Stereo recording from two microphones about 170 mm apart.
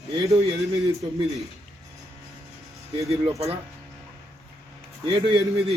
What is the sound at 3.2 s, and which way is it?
Speech, 35° right (ahead or behind).